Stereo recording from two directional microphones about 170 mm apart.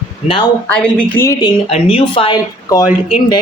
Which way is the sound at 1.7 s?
35° left (ahead or behind).